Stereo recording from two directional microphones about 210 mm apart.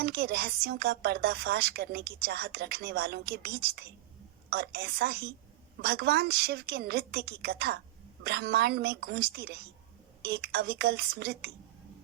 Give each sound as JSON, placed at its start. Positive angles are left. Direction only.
{"t": 0.0, "sound": "speech", "side_deg": -50}